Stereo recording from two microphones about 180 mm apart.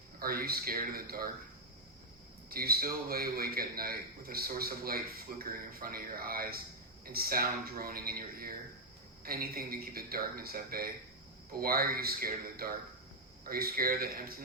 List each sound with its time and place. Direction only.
0.2 s speech: 55° right (ahead or behind)
2.5 s a man's voice: 55° right (ahead or behind)